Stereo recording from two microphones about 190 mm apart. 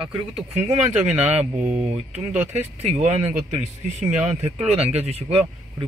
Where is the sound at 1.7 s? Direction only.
35° right (ahead or behind).